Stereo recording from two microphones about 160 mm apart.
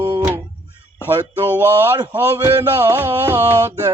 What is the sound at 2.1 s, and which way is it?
Speech, 20° right (ahead or behind).